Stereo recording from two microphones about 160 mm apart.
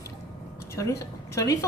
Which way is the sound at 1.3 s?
20° left (ahead or behind).